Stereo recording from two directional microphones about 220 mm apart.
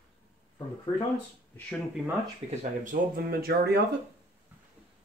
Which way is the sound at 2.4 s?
40° right (ahead or behind).